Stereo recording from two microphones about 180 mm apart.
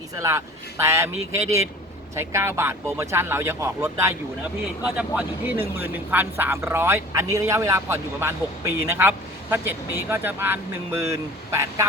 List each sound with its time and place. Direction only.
0.2 s speech: 15° right (ahead or behind)